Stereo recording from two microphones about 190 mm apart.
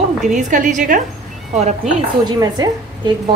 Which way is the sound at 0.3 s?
40° right (ahead or behind).